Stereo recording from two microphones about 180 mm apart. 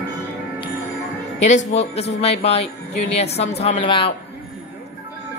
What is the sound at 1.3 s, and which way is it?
Speech, 40° left (ahead or behind).